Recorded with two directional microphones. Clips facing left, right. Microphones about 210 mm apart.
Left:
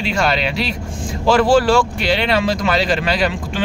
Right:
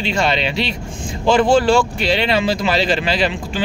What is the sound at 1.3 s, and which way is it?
Speech, 25° right (ahead or behind).